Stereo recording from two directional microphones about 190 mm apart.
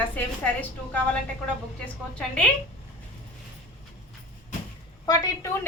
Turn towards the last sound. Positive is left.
turn(degrees=20)  # may be behind; listen again after turning